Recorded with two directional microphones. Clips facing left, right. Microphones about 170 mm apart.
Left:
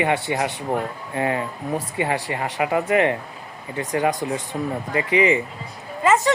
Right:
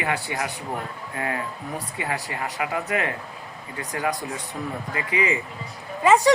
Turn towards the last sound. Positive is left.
turn(degrees=-15)  # may be behind; listen again after turning